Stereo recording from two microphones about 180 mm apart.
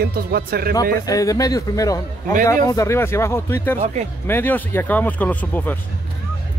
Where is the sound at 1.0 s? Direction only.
20° left (ahead or behind).